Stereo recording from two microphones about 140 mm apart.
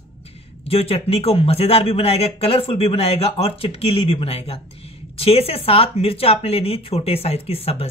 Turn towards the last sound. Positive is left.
turn(degrees=45)  # may be behind; listen again after turning